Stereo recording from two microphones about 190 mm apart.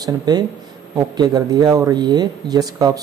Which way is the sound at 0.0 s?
20° right (ahead or behind).